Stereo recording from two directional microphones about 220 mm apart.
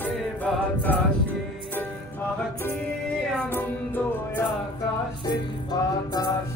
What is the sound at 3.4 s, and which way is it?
Music, 10° left (ahead or behind).